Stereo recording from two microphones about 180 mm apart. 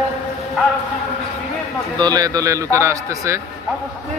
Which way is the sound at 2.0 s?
20° right (ahead or behind).